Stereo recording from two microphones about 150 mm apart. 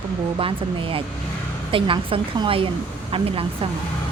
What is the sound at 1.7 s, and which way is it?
A woman's voice, 35° right (ahead or behind).